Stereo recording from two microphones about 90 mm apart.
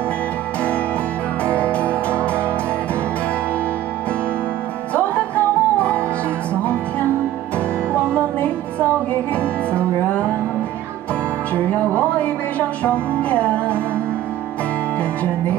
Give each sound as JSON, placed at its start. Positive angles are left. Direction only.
{"t": 1.4, "sound": "music", "side_deg": 15}
{"t": 4.9, "sound": "music", "side_deg": 15}
{"t": 12.0, "sound": "music", "side_deg": 15}